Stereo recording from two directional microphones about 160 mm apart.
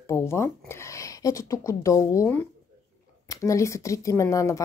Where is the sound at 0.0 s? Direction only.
15° left (ahead or behind).